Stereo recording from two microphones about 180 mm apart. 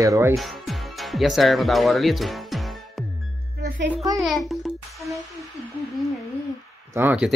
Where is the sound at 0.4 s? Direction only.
Centre (ahead or behind).